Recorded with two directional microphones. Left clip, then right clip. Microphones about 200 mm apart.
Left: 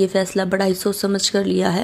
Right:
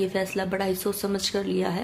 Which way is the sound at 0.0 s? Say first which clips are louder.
Left 8 dB; 35° left (ahead or behind).